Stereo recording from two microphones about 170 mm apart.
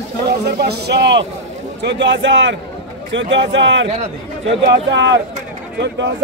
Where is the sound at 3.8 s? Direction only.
40° right (ahead or behind).